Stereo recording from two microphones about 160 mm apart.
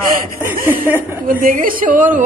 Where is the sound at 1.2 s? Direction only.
60° right (ahead or behind).